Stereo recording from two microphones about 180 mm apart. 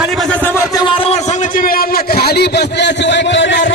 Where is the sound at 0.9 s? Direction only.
30° left (ahead or behind).